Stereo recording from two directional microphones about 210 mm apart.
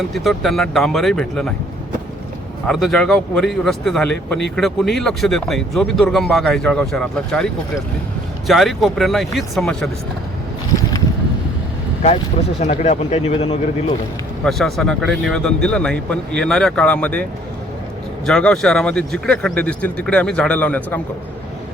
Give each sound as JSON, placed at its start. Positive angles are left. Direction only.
{"t": 0.1, "sound": "speech", "side_deg": 0}
{"t": 2.6, "sound": "speech", "side_deg": 0}
{"t": 12.5, "sound": "speech", "side_deg": 30}
{"t": 14.4, "sound": "speech", "side_deg": 5}
{"t": 18.3, "sound": "speech", "side_deg": 0}